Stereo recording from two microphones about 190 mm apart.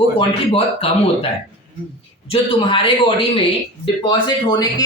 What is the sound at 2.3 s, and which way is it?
Speech, 25° left (ahead or behind).